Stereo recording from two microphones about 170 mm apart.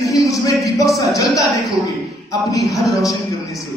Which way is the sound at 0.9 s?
20° left (ahead or behind).